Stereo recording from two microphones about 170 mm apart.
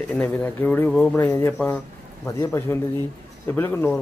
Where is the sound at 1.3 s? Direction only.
15° left (ahead or behind).